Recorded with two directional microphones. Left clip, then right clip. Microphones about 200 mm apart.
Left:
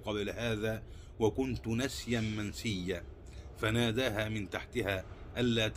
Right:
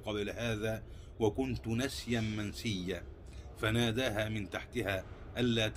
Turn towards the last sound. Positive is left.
turn(degrees=15)  # may be behind; listen again after turning